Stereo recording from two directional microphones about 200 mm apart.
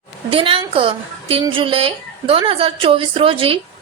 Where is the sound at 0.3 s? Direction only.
25° right (ahead or behind).